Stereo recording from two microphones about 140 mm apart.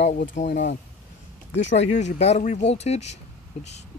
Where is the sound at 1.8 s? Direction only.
50° left (ahead or behind).